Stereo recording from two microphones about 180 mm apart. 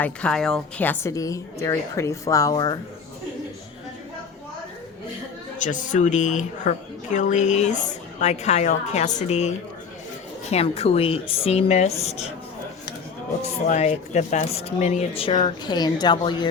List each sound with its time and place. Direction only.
0.0 s a woman's voice: 5° left (ahead or behind); by 2.7 s 20° left (ahead or behind)
5.5 s a woman's voice: 45° left (ahead or behind)
13.4 s a woman's voice: 40° left (ahead or behind); by 16.5 s 25° left (ahead or behind)